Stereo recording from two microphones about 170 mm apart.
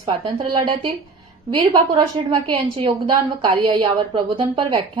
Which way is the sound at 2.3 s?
30° right (ahead or behind).